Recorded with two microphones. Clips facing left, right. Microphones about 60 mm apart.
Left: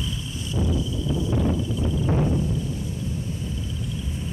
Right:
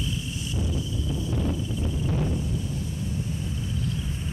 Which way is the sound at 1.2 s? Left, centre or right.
Left.